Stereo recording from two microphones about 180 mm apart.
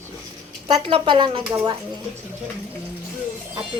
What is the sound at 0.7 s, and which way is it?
Speech, 30° right (ahead or behind).